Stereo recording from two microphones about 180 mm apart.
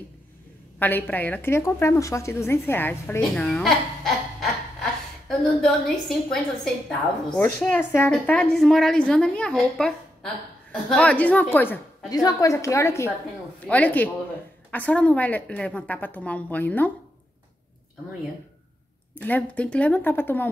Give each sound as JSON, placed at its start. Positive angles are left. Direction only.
{"t": 0.7, "sound": "a woman's voice", "side_deg": 10}
{"t": 5.6, "sound": "a woman's voice", "side_deg": 5}
{"t": 12.1, "sound": "a woman's voice", "side_deg": 20}
{"t": 19.1, "sound": "a woman's voice", "side_deg": 10}